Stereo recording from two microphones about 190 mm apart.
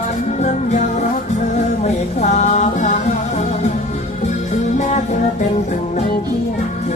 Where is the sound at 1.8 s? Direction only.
40° left (ahead or behind).